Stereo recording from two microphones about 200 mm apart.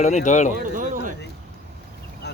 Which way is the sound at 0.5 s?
40° right (ahead or behind).